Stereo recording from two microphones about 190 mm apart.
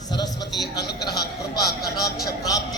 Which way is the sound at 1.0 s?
20° left (ahead or behind).